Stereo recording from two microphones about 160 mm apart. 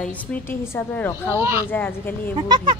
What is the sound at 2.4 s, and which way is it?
Speech, 30° right (ahead or behind).